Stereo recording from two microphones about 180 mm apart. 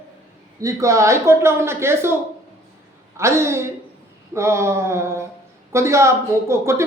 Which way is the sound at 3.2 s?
15° right (ahead or behind).